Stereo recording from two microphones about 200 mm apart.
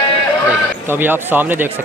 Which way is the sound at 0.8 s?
10° right (ahead or behind).